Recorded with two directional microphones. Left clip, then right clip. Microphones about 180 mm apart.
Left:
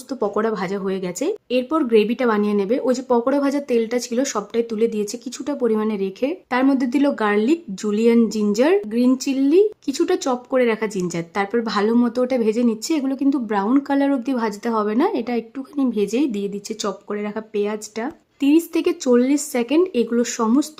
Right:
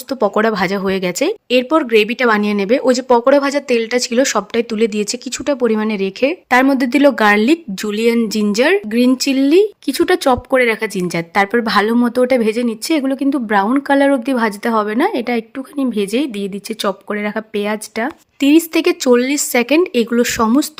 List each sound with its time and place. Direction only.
0.1 s speech: 20° right (ahead or behind)